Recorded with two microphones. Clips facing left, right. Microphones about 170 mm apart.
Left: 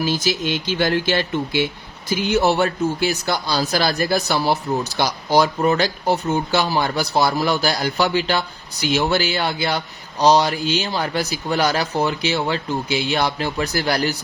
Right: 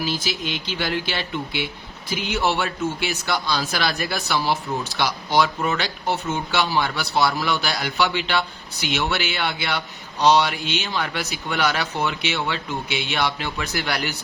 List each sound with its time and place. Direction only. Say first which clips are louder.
0.0 s speech: left 5 dB; 45° left (ahead or behind)